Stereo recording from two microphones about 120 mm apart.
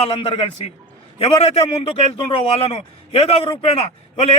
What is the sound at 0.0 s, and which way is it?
A man's voice, 50° left (ahead or behind).